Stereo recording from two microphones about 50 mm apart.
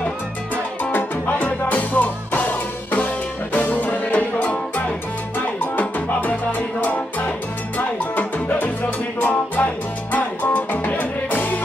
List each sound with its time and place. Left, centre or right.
0.9 s music: left
5.8 s salsa music: left
9.2 s music: left